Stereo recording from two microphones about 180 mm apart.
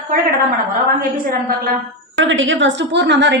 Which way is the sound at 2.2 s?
90° right.